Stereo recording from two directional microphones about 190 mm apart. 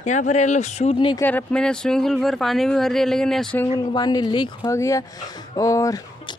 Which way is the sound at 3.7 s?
20° left (ahead or behind).